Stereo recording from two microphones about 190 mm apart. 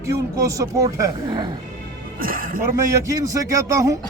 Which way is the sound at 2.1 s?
50° right (ahead or behind).